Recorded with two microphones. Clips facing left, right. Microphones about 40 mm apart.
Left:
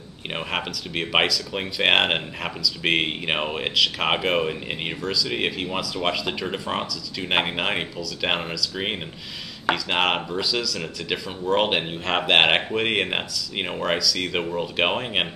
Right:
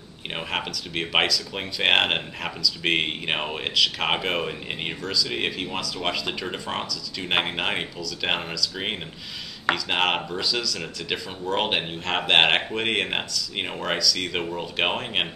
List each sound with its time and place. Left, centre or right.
0.3 s speech: centre